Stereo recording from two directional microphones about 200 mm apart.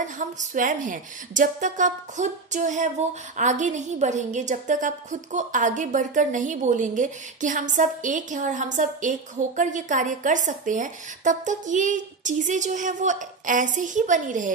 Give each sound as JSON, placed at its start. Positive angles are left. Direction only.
{"t": 0.0, "sound": "a woman's voice", "side_deg": -40}